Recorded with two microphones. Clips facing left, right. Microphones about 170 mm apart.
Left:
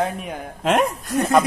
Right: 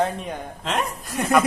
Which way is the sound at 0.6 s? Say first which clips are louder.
Left 8 dB; 55° left (ahead or behind).